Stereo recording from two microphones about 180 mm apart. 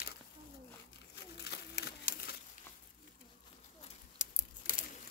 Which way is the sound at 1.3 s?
65° left (ahead or behind).